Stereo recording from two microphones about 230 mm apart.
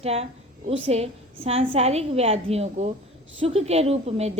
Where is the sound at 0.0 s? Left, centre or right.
Right.